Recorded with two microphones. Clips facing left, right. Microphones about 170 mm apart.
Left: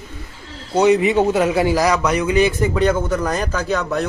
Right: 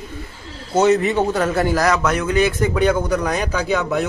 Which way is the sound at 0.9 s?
5° left (ahead or behind).